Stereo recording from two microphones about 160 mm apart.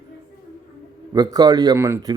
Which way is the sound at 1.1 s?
25° right (ahead or behind).